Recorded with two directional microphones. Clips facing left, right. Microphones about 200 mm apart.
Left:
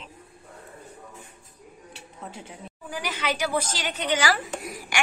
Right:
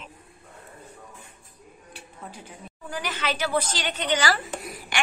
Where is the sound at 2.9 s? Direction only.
10° left (ahead or behind).